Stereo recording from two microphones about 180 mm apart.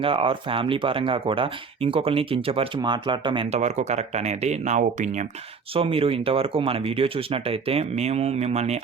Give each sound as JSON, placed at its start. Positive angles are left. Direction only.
{"t": 0.0, "sound": "speech", "side_deg": -30}
{"t": 5.7, "sound": "speech", "side_deg": -30}